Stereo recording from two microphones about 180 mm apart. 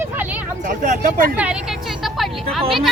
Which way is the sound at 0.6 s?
45° right (ahead or behind).